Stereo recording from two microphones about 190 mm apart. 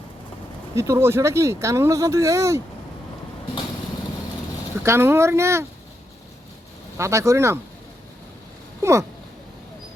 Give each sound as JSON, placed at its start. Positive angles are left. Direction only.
{"t": 0.8, "sound": "speech", "side_deg": -15}
{"t": 4.8, "sound": "speech", "side_deg": -15}
{"t": 6.9, "sound": "speech", "side_deg": -15}
{"t": 8.8, "sound": "speech", "side_deg": -15}